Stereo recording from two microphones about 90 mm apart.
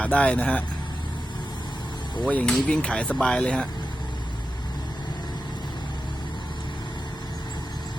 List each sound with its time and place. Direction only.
0.0 s speech: 15° left (ahead or behind)
2.2 s speech: 10° left (ahead or behind)